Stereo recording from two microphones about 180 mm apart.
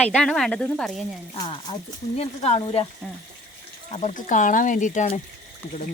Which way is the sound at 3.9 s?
45° left (ahead or behind).